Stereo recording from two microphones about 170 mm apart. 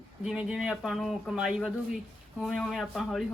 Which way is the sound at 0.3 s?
5° right (ahead or behind).